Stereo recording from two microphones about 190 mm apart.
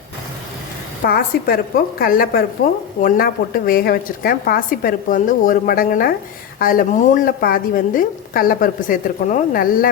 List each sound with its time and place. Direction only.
1.0 s a woman's voice: 50° left (ahead or behind)